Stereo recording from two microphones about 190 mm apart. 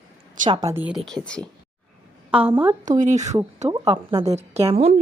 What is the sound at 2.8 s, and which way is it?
Speech, 40° right (ahead or behind).